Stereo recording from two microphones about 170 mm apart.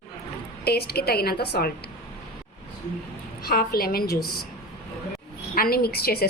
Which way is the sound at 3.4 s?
60° left (ahead or behind).